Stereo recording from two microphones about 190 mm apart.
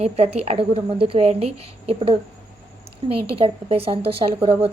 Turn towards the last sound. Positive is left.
turn(degrees=-30)  # may be behind; listen again after turning